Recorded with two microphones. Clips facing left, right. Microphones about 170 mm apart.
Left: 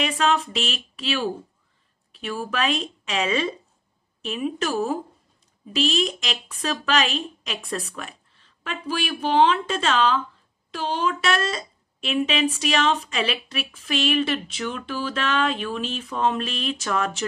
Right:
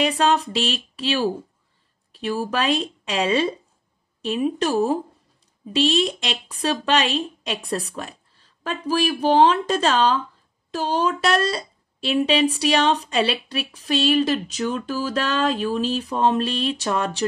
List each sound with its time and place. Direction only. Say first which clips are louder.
0.0 s speech: right 3 dB; 35° right (ahead or behind)